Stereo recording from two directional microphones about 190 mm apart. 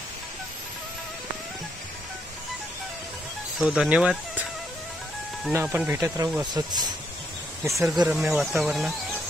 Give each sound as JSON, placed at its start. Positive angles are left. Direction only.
{"t": 3.5, "sound": "speech", "side_deg": -5}
{"t": 5.5, "sound": "speech", "side_deg": -10}
{"t": 6.4, "sound": "speech", "side_deg": -20}
{"t": 7.7, "sound": "speech", "side_deg": 0}